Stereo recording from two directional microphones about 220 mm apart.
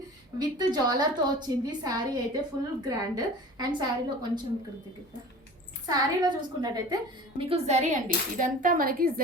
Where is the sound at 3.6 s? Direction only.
20° right (ahead or behind).